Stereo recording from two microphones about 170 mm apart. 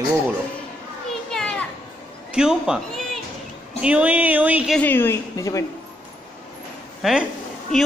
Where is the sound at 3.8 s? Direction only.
5° right (ahead or behind).